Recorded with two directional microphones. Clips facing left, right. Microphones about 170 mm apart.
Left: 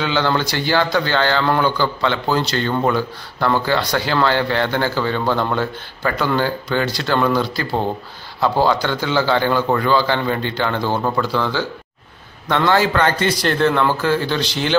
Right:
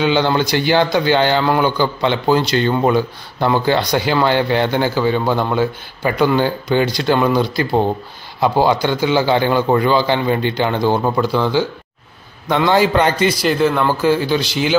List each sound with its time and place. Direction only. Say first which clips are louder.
0.0 s speech: right 4 dB; 15° right (ahead or behind)